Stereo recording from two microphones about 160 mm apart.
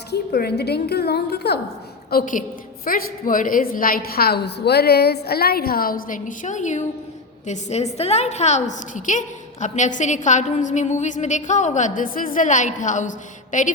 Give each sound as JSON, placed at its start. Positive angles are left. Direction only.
{"t": 0.1, "sound": "a woman's voice", "side_deg": 75}
{"t": 2.0, "sound": "a woman's voice", "side_deg": 60}